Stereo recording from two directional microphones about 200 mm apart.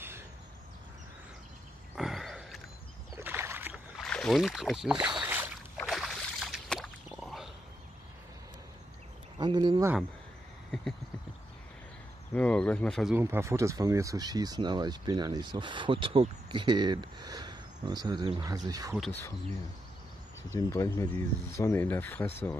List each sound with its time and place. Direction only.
2.0 s a sound: centre (ahead or behind)
3.2 s rowboat: 10° right (ahead or behind)
4.0 s speech: 5° left (ahead or behind)
5.0 s boat: 5° right (ahead or behind)
5.8 s a sound: centre (ahead or behind)
9.4 s speech: 25° right (ahead or behind)
10.7 s horse: centre (ahead or behind)
12.4 s speech: 5° left (ahead or behind)
13.1 s speech: 10° right (ahead or behind)
18.9 s speech: centre (ahead or behind)
20.5 s speech: 15° left (ahead or behind)